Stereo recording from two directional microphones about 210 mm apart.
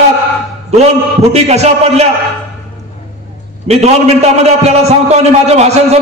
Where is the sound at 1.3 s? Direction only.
30° right (ahead or behind).